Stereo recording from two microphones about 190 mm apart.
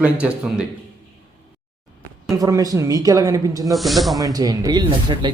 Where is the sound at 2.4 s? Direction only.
15° right (ahead or behind).